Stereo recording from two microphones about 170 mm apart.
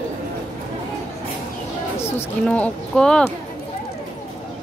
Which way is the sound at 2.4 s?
5° left (ahead or behind).